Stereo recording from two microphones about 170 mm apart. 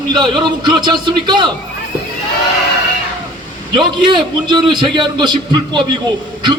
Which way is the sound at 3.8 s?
25° right (ahead or behind).